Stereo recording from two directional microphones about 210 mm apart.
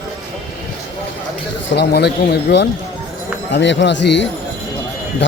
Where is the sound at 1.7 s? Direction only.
50° left (ahead or behind).